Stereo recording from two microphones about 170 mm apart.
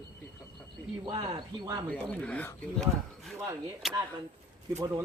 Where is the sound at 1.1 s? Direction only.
30° right (ahead or behind).